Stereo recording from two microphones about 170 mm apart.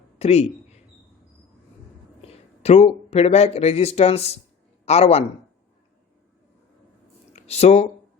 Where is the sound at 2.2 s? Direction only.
35° left (ahead or behind).